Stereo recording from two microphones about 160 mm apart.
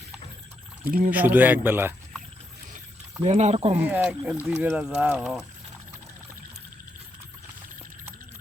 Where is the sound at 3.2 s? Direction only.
45° right (ahead or behind).